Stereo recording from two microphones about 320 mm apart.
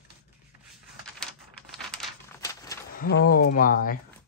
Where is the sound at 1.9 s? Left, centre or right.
Centre.